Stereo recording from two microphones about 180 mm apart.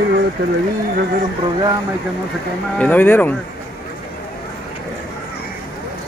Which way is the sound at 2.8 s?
10° left (ahead or behind).